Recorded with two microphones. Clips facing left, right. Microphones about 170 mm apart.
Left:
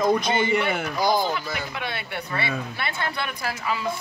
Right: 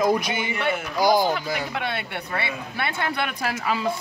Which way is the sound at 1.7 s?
60° right (ahead or behind).